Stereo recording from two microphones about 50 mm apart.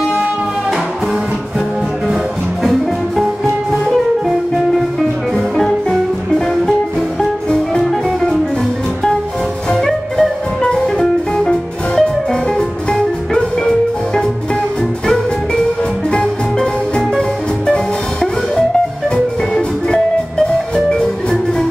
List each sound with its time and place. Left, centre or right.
3.7 s music: centre
9.8 s music: centre
16.1 s music: centre
20.7 s music: centre